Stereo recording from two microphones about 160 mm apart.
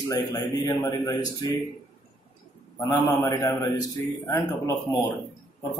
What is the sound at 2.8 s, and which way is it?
Speech, 20° left (ahead or behind).